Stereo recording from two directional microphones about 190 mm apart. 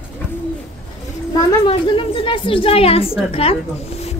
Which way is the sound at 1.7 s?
25° left (ahead or behind).